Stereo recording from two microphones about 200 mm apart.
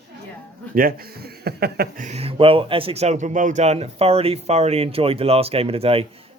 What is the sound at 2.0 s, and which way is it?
Speech, 30° right (ahead or behind).